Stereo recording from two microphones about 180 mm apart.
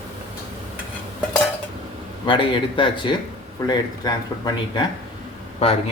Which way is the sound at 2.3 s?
30° left (ahead or behind).